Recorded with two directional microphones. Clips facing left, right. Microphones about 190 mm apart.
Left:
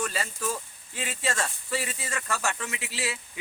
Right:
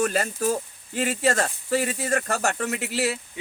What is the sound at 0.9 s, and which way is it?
Speech, 60° right (ahead or behind).